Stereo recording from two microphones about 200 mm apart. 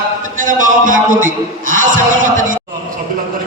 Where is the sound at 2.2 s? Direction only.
40° right (ahead or behind).